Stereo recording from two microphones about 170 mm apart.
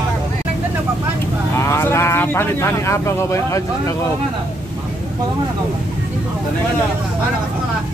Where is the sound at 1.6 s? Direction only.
15° left (ahead or behind).